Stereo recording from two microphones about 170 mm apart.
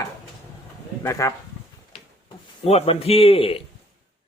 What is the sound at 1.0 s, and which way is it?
Speech, 20° left (ahead or behind).